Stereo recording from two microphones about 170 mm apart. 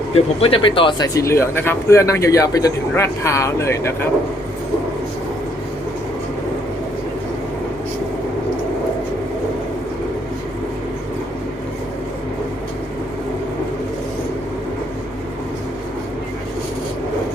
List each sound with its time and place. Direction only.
0.3 s speech: 35° left (ahead or behind); by 4.1 s 15° left (ahead or behind)